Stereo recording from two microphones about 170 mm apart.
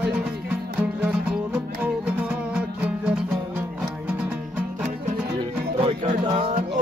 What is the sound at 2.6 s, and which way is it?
Music, 10° right (ahead or behind).